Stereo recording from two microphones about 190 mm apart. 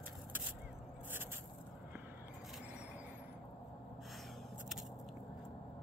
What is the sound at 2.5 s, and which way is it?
Vehicle, 5° right (ahead or behind).